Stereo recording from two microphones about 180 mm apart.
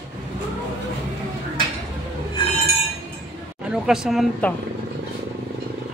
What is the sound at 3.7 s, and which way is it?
Speech, 5° right (ahead or behind).